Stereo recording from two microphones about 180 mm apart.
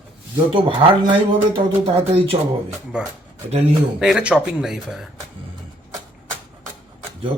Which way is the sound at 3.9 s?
5° right (ahead or behind).